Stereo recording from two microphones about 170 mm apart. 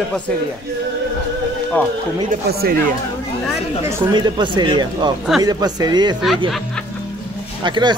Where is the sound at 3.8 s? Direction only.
15° right (ahead or behind).